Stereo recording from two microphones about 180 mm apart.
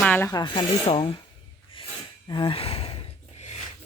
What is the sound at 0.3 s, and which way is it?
Speech, 20° left (ahead or behind).